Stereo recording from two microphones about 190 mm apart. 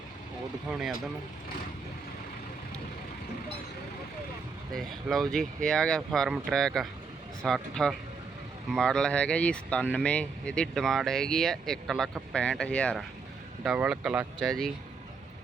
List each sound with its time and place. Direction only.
0.7 s speech: 5° right (ahead or behind)
4.7 s speech: centre (ahead or behind)
13.7 s speech: 5° right (ahead or behind)